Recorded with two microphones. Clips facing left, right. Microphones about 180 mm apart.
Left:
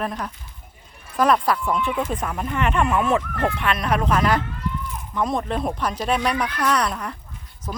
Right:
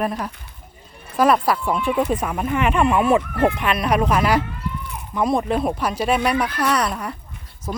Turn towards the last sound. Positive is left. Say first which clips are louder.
# right 2 dB
turn(degrees=-10)  # may be behind; listen again after turning